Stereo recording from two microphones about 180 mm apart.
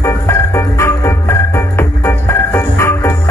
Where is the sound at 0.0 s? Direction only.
15° left (ahead or behind).